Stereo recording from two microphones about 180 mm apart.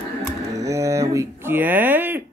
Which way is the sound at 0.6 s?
15° right (ahead or behind).